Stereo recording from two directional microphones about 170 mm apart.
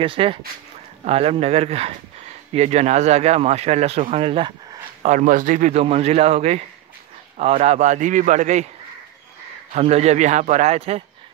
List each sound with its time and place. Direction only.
0.0 s speech: 30° right (ahead or behind)
5.0 s a man's voice: 50° right (ahead or behind)
9.8 s speech: 40° right (ahead or behind)